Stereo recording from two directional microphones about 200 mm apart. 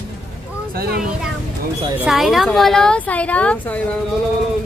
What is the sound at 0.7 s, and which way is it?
Speech, 50° right (ahead or behind).